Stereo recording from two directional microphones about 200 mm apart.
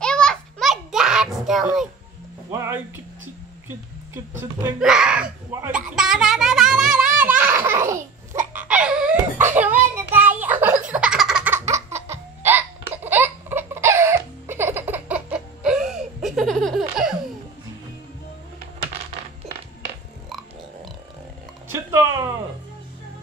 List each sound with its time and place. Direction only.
0.0 s a sound: 5° left (ahead or behind)
2.5 s speech: 15° right (ahead or behind)
4.7 s speech: 5° right (ahead or behind)
7.2 s baby laughter: 10° right (ahead or behind)
9.6 s music: 10° right (ahead or behind)
10.1 s a sound: 10° right (ahead or behind)
10.9 s laughter: 5° right (ahead or behind)
12.9 s music: 10° right (ahead or behind)
21.9 s a sound: 15° right (ahead or behind)